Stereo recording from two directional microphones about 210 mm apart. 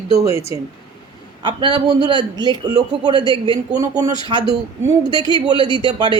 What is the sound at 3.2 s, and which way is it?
Speech, 20° left (ahead or behind).